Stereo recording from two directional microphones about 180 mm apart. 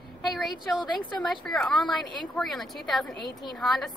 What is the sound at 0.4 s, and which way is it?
A woman's voice, centre (ahead or behind).